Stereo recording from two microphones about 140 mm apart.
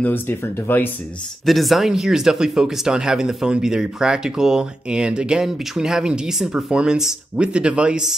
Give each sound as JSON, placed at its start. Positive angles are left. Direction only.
{"t": 0.0, "sound": "speech", "side_deg": 15}
{"t": 1.4, "sound": "speech", "side_deg": 0}